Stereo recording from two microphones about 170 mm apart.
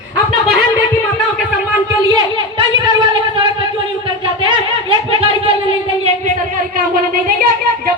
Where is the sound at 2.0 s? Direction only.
25° right (ahead or behind).